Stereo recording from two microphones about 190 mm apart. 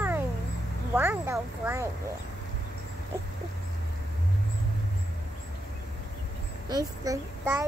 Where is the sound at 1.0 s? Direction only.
10° right (ahead or behind).